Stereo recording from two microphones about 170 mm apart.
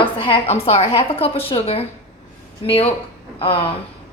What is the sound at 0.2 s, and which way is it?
A woman's voice, 35° left (ahead or behind).